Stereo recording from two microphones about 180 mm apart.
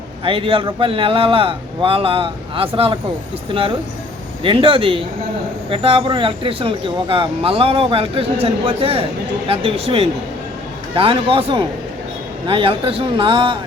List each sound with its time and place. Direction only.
0.3 s speech: 30° right (ahead or behind)